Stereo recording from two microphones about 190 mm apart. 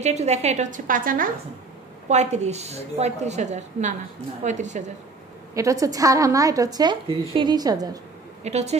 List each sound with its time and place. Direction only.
0.0 s a woman's voice: 35° right (ahead or behind)
5.5 s a woman's voice: 15° right (ahead or behind)
8.5 s a woman's voice: 35° right (ahead or behind)